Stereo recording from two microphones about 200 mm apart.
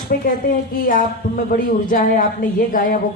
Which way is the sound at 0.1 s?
45° left (ahead or behind).